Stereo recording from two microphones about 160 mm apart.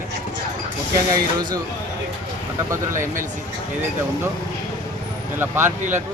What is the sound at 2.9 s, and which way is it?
Speech, 55° right (ahead or behind).